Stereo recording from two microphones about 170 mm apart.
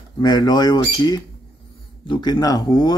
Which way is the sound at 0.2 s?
25° left (ahead or behind).